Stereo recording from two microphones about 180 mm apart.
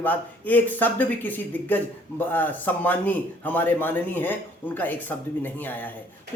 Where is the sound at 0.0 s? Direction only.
10° left (ahead or behind).